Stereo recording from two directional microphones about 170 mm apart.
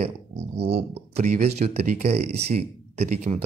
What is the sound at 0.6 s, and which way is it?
Speech, 75° right (ahead or behind).